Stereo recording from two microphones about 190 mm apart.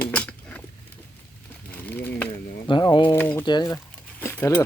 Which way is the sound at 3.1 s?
10° left (ahead or behind).